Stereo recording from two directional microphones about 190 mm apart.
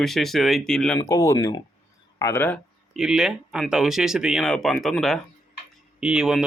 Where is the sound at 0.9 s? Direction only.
20° left (ahead or behind).